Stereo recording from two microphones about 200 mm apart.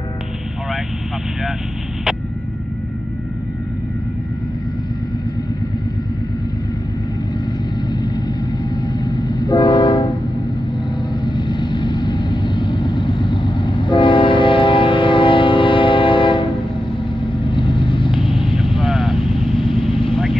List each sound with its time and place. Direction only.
7.9 s train: 20° left (ahead or behind)
11.2 s vehicle: 20° left (ahead or behind)
17.5 s vehicle: 25° left (ahead or behind)
18.8 s vehicle: centre (ahead or behind)
19.8 s vehicle: 25° left (ahead or behind)